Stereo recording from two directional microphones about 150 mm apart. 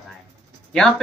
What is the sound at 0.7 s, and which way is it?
Speech, 5° left (ahead or behind).